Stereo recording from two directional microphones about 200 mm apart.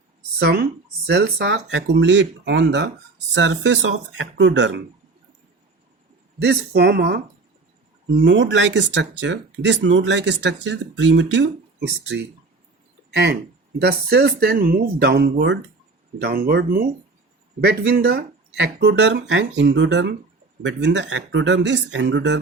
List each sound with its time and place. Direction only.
0.3 s speech: 55° right (ahead or behind)
6.4 s speech: 55° right (ahead or behind)
13.1 s a sound: 55° right (ahead or behind)
13.7 s speech: 55° right (ahead or behind)